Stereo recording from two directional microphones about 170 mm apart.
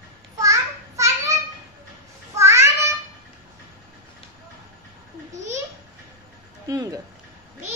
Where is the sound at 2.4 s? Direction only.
15° right (ahead or behind).